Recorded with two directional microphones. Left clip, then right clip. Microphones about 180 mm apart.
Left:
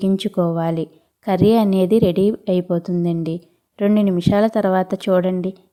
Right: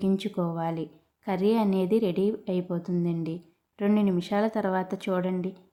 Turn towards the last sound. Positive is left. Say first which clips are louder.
# left 11 dB
turn(degrees=40)  # may be behind; listen again after turning